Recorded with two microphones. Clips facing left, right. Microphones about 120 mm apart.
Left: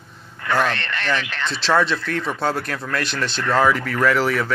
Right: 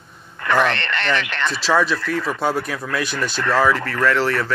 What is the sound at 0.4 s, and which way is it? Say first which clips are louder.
A woman's voice: right 2 dB; 75° right (ahead or behind).